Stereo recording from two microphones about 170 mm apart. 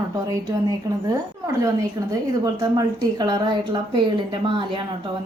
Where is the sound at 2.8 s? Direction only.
25° right (ahead or behind).